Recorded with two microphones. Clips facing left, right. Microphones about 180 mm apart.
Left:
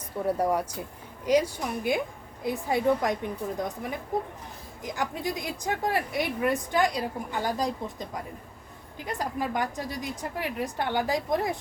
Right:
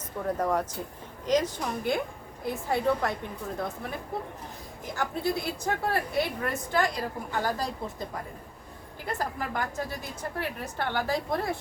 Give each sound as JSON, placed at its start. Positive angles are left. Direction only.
{"t": 0.3, "sound": "a woman's voice", "side_deg": 10}
{"t": 9.1, "sound": "a woman's voice", "side_deg": 15}